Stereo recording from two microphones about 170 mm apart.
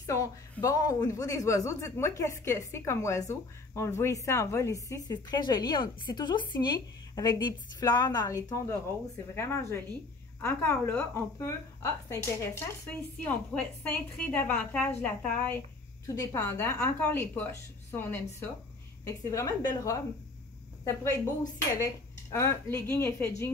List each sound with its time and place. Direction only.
0.0 s a woman's voice: 20° left (ahead or behind)
22.3 s a woman's voice: 15° left (ahead or behind)